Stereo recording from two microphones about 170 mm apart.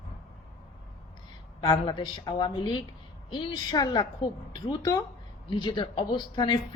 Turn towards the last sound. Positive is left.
turn(degrees=25)  # may be behind; listen again after turning